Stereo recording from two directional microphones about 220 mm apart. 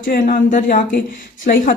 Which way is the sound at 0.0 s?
40° left (ahead or behind).